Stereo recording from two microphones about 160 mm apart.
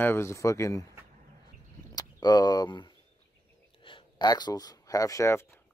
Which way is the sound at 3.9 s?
25° left (ahead or behind).